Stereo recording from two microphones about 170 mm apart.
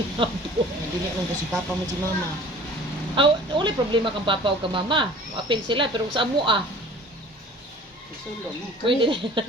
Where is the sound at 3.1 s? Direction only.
30° right (ahead or behind).